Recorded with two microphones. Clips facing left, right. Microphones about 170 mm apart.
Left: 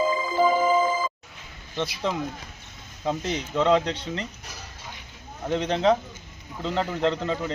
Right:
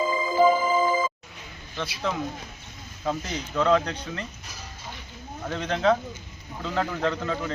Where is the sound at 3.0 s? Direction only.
20° left (ahead or behind).